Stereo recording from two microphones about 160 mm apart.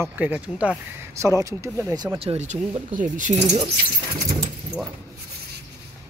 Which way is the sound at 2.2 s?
45° right (ahead or behind).